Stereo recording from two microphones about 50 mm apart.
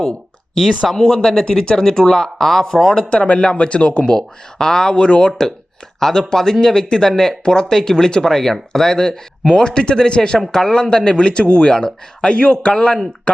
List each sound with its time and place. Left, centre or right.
0.9 s speech: centre